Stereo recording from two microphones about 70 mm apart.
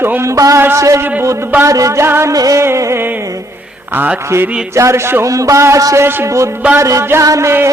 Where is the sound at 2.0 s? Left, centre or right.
Right.